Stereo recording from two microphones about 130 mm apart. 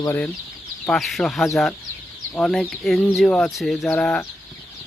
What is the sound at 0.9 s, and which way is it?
Speech, centre (ahead or behind).